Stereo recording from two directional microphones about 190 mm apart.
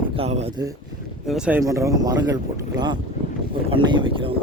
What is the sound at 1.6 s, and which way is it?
Speech, 15° right (ahead or behind).